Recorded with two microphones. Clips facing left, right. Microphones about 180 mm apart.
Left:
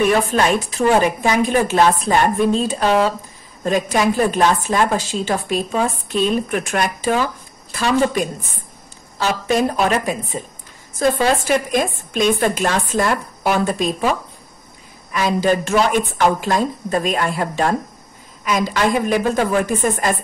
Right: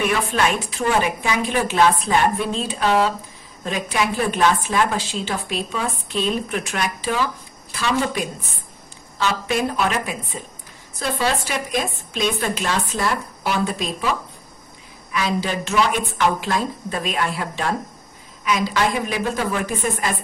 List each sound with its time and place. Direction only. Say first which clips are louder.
0.3 s a woman's voice: left 4 dB; 40° left (ahead or behind)
15.1 s a woman's voice: left 6 dB; 45° left (ahead or behind)